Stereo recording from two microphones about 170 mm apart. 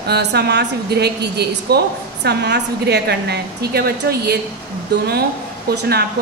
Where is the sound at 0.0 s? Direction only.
75° right (ahead or behind).